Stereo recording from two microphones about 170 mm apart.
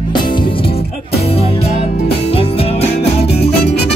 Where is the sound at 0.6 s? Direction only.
35° left (ahead or behind).